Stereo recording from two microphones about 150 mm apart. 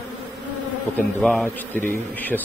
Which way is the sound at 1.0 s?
5° left (ahead or behind).